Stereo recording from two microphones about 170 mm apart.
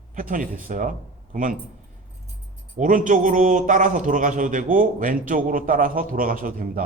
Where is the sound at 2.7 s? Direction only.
50° right (ahead or behind).